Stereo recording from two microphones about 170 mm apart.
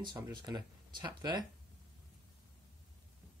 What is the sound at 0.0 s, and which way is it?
Speech, 25° right (ahead or behind).